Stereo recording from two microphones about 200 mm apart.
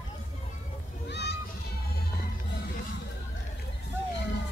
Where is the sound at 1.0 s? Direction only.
55° left (ahead or behind).